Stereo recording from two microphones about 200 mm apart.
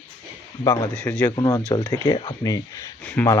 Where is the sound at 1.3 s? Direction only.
20° left (ahead or behind).